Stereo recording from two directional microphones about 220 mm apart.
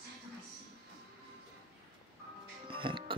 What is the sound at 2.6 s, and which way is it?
Music, 25° right (ahead or behind).